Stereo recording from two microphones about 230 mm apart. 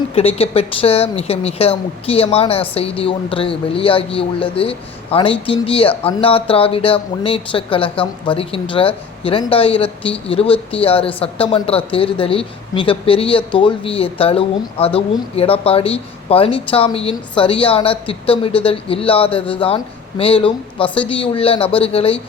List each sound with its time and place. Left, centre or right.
0.1 s speech: left